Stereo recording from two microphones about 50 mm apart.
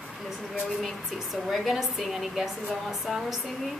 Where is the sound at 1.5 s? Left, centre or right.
Centre.